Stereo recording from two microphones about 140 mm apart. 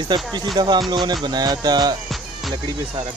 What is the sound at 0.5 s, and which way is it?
Speech, 30° right (ahead or behind).